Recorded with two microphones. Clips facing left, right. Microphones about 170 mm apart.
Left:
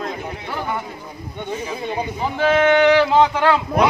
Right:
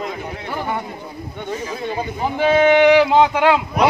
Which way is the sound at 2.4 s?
15° right (ahead or behind).